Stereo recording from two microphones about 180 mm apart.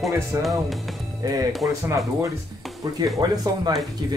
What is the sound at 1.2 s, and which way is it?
Speech, 20° right (ahead or behind).